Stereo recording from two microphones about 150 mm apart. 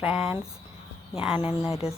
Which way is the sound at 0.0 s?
5° right (ahead or behind).